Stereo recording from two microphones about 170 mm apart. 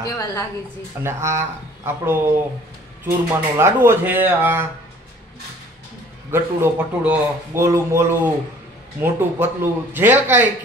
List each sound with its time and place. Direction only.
0.0 s a woman's voice: 20° left (ahead or behind)
1.0 s speech: 15° right (ahead or behind)
6.3 s speech: 10° right (ahead or behind)